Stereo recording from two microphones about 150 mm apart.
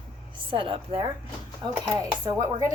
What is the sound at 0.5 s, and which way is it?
A woman's voice, 35° right (ahead or behind).